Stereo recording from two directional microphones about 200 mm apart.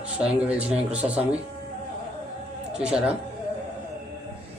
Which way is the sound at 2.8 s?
5° right (ahead or behind).